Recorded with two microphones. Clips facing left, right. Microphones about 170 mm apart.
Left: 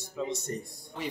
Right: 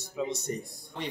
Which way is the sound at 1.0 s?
Centre (ahead or behind).